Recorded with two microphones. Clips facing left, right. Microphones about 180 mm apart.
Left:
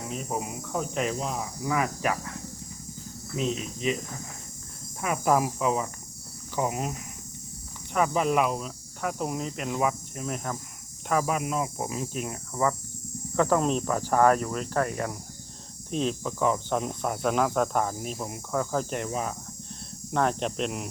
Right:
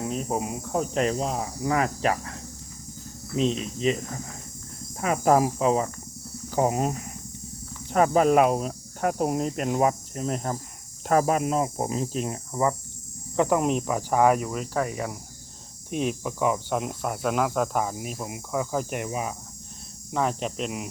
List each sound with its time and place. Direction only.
0.3 s speech: 30° right (ahead or behind)
3.3 s speech: 30° right (ahead or behind)
4.9 s speech: 35° right (ahead or behind)
7.9 s speech: 40° right (ahead or behind)
9.7 s speech: 35° right (ahead or behind); by 20.9 s centre (ahead or behind)